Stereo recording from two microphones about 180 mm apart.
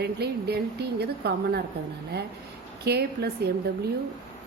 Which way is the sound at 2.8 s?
65° right (ahead or behind).